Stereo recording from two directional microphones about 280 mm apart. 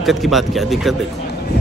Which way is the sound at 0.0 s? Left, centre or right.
Centre.